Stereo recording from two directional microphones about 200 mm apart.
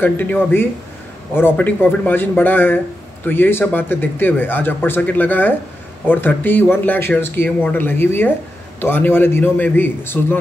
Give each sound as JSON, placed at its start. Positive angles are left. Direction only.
{"t": 0.0, "sound": "speech", "side_deg": 10}